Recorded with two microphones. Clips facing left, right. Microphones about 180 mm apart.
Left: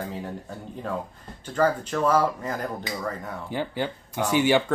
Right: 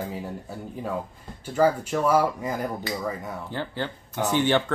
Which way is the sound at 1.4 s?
10° right (ahead or behind).